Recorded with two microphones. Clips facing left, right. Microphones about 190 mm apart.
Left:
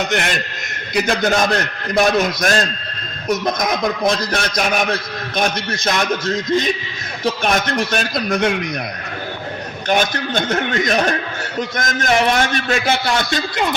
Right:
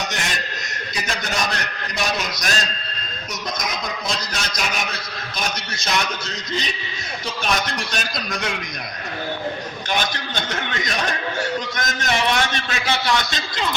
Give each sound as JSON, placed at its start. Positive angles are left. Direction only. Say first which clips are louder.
{"t": 0.0, "sound": "a man's voice", "louder": "left 7 dB", "side_deg": 60}
{"t": 9.9, "sound": "a man's voice", "louder": "left 8 dB", "side_deg": 50}